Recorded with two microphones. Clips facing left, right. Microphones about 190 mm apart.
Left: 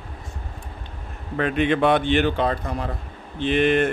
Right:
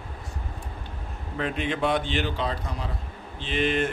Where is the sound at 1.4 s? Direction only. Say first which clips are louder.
Left 7 dB; 65° left (ahead or behind).